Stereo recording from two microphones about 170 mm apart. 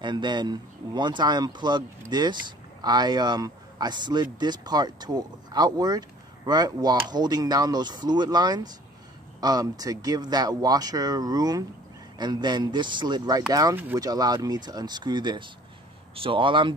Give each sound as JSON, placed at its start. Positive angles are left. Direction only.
{"t": 0.0, "sound": "a man's voice", "side_deg": -25}